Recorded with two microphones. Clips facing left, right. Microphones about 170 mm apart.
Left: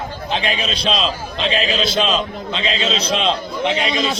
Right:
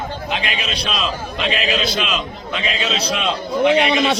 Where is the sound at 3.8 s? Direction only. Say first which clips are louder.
Right 4 dB; 70° right (ahead or behind).